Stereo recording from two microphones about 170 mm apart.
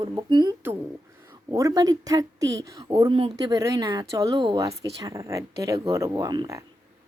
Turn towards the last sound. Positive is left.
turn(degrees=-20)  # may be behind; listen again after turning